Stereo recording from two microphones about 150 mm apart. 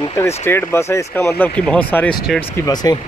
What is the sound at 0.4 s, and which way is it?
Speech, 15° left (ahead or behind).